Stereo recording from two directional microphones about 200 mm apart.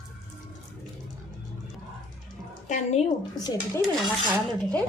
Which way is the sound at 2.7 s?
35° left (ahead or behind).